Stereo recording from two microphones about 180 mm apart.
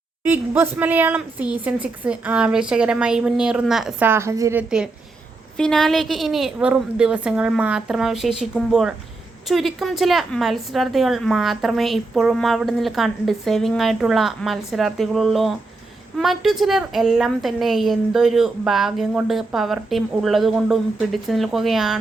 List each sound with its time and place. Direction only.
0.3 s a woman's voice: 10° right (ahead or behind)
4.1 s a woman's voice: 15° right (ahead or behind)
5.5 s a woman's voice: 5° left (ahead or behind)